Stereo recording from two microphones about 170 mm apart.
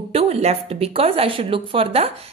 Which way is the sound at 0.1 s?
35° right (ahead or behind).